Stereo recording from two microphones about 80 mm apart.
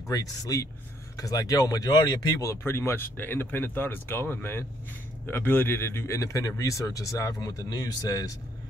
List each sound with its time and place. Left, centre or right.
0.1 s speech: left